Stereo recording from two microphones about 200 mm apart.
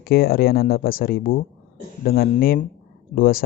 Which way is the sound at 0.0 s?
50° left (ahead or behind).